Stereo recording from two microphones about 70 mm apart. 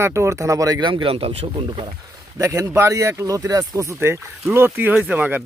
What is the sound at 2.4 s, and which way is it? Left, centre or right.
Speech, right.